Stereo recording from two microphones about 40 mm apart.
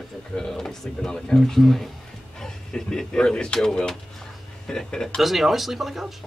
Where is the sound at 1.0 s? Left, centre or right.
Centre.